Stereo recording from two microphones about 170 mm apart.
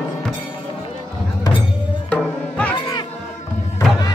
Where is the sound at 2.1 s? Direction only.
10° left (ahead or behind).